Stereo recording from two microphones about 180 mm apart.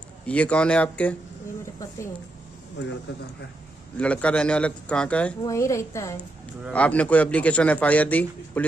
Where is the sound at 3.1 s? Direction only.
75° left (ahead or behind).